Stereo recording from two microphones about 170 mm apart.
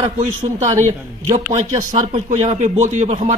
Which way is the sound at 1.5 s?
40° right (ahead or behind).